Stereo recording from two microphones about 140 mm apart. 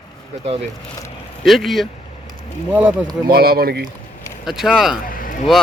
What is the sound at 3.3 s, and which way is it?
Speech, 90° right.